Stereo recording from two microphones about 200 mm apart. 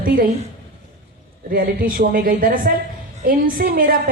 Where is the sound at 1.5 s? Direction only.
45° right (ahead or behind).